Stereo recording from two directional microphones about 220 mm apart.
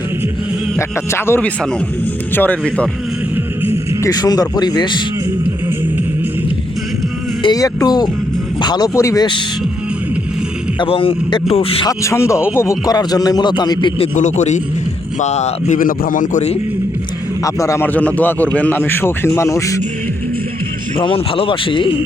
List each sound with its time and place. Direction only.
0.8 s a man's voice: 10° left (ahead or behind)
4.0 s speech: 15° left (ahead or behind)
7.4 s a man's voice: 15° left (ahead or behind)
10.8 s a man's voice: 25° left (ahead or behind)
14.2 s speech: 35° left (ahead or behind)
17.4 s a man's voice: 15° left (ahead or behind)
21.0 s speech: 25° left (ahead or behind)